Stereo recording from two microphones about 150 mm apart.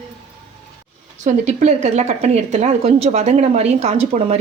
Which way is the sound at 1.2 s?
55° right (ahead or behind).